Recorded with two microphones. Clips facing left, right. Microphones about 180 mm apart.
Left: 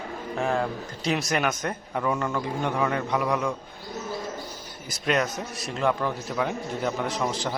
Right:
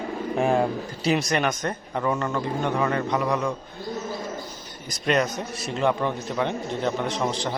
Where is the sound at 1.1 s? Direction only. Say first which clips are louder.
Right 3 dB; centre (ahead or behind).